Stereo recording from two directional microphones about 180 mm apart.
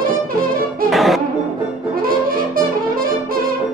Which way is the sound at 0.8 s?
Centre (ahead or behind).